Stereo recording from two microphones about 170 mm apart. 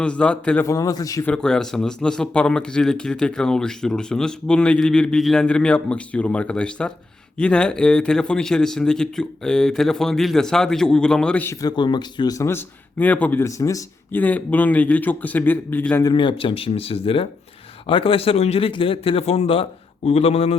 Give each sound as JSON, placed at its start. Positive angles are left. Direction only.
{"t": 0.0, "sound": "speech", "side_deg": 5}
{"t": 0.7, "sound": "a man's voice", "side_deg": 20}
{"t": 1.3, "sound": "speech", "side_deg": 5}
{"t": 11.6, "sound": "speech", "side_deg": 25}
{"t": 16.0, "sound": "a man's voice", "side_deg": 30}